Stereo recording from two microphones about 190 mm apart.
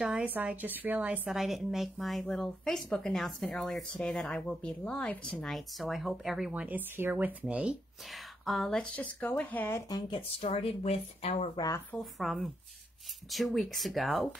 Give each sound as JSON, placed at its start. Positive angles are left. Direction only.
{"t": 0.0, "sound": "a woman's voice", "side_deg": -5}
{"t": 11.9, "sound": "a woman's voice", "side_deg": 0}